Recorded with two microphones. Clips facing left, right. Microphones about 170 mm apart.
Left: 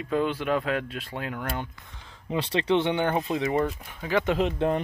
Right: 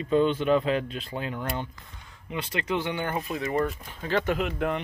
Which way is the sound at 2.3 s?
30° left (ahead or behind).